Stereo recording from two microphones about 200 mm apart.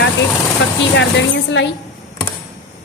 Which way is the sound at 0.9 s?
65° left (ahead or behind).